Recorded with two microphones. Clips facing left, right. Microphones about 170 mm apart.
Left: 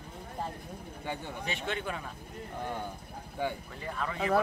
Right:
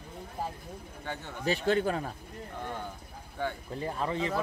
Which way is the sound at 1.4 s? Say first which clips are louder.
Right 10 dB; 35° right (ahead or behind).